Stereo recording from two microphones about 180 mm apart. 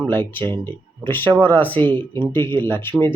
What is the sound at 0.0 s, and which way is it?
Speech, 10° left (ahead or behind).